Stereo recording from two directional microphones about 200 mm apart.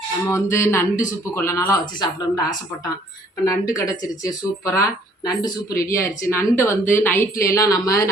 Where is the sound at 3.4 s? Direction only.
15° left (ahead or behind).